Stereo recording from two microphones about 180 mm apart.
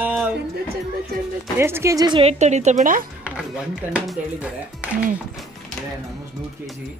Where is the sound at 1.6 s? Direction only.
15° right (ahead or behind); by 3.1 s 45° right (ahead or behind).